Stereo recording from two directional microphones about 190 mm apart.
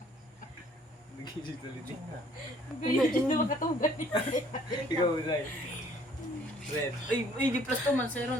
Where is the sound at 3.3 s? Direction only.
45° left (ahead or behind).